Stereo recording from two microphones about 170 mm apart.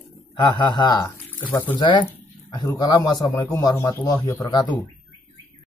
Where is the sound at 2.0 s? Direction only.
25° left (ahead or behind).